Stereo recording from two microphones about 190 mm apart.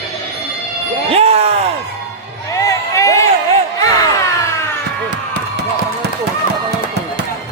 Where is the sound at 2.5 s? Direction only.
15° left (ahead or behind).